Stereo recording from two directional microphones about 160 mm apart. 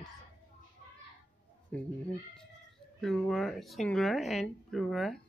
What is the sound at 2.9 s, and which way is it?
Speech, 5° left (ahead or behind).